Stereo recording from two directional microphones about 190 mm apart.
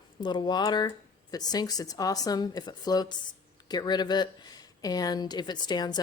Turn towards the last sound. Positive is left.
turn(degrees=20)  # may be behind; listen again after turning